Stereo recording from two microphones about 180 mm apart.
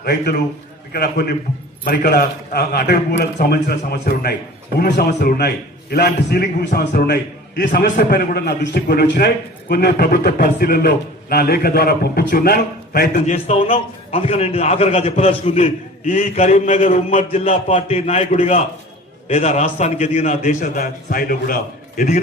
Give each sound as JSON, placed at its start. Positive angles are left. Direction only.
{"t": 0.0, "sound": "a man's voice", "side_deg": 65}
{"t": 13.2, "sound": "a man's voice", "side_deg": 35}